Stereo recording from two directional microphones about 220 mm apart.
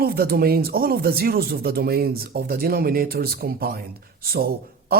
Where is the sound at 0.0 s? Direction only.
45° right (ahead or behind).